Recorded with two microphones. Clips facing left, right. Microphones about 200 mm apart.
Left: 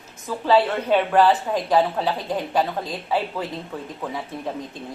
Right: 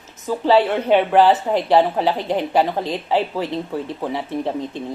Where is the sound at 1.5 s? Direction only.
30° right (ahead or behind).